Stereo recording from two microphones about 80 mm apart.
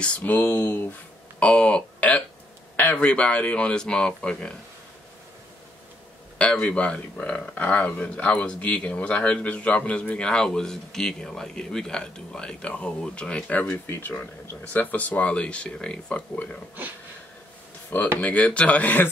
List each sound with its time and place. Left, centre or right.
0.0 s speech: left
2.7 s a sound: left
3.1 s speech: centre
6.3 s speech: centre
13.8 s speech: left; by 16.6 s centre
17.8 s speech: left